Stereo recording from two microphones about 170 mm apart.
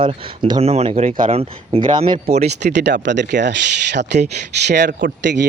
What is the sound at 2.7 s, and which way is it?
Speech, 90° right.